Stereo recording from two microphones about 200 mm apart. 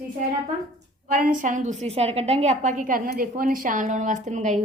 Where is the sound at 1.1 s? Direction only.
40° right (ahead or behind).